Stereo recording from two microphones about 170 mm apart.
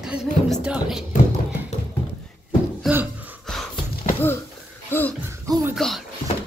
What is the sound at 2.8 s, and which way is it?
Gasp, 10° right (ahead or behind).